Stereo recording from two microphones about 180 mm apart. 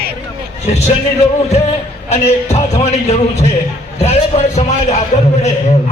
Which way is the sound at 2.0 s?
35° left (ahead or behind).